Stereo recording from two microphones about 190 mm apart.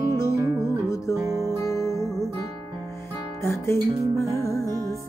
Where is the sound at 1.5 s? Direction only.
15° left (ahead or behind).